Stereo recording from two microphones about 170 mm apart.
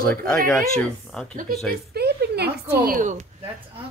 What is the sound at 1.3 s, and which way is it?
Speech, 50° right (ahead or behind).